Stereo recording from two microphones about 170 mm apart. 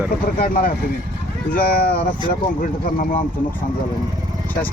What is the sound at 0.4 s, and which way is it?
Speech, 60° left (ahead or behind).